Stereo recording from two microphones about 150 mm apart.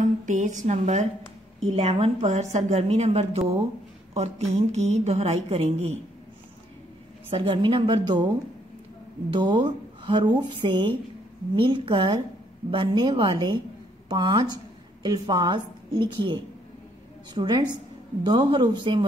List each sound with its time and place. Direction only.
0.0 s a woman's voice: 55° right (ahead or behind)
7.2 s a woman's voice: 35° right (ahead or behind)
9.3 s a woman's voice: 30° right (ahead or behind)